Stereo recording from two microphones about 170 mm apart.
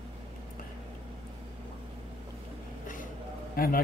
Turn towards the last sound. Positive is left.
turn(degrees=60)  # may be behind; listen again after turning